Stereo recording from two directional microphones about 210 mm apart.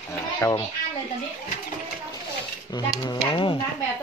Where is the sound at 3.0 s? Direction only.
20° left (ahead or behind).